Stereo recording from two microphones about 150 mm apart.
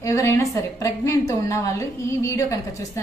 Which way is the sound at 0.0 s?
20° left (ahead or behind).